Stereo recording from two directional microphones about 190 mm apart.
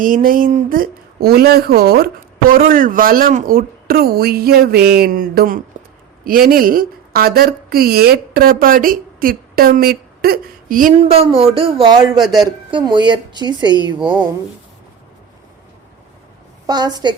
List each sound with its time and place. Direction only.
0.0 s speech: 45° right (ahead or behind)
5.7 s a sound: 45° right (ahead or behind)
6.2 s a woman's voice: 50° right (ahead or behind)
10.9 s a woman's voice: 30° right (ahead or behind)
16.6 s a woman's voice: 20° right (ahead or behind)